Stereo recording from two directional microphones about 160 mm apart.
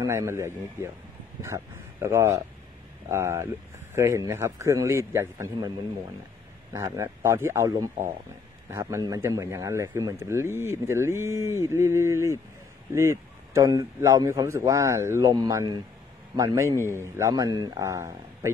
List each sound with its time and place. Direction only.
0.0 s speech: 20° right (ahead or behind)
6.7 s a man's voice: 15° right (ahead or behind)
16.8 s a man's voice: 15° left (ahead or behind)
17.2 s a man's voice: 20° right (ahead or behind)